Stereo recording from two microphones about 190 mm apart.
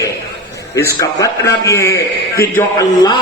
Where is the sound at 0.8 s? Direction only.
15° left (ahead or behind).